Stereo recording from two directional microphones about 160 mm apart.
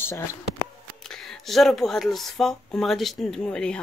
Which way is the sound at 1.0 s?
Centre (ahead or behind).